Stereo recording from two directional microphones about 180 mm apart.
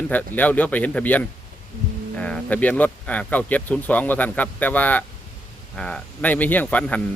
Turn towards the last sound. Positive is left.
turn(degrees=10)  # may be behind; listen again after turning